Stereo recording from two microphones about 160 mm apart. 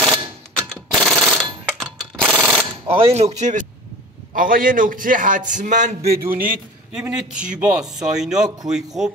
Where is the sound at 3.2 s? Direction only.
45° right (ahead or behind).